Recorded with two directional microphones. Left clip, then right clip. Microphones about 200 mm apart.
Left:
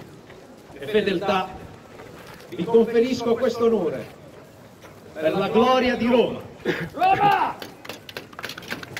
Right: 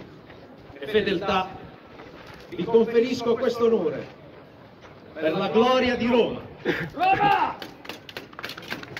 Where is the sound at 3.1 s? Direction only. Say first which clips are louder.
Left 2 dB; 45° right (ahead or behind).